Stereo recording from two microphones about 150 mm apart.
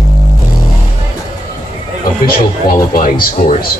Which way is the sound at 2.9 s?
65° left (ahead or behind).